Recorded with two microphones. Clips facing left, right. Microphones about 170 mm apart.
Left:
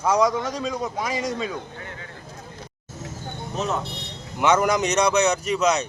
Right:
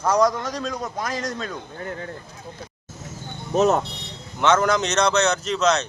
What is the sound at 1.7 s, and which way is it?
Speech, 40° right (ahead or behind).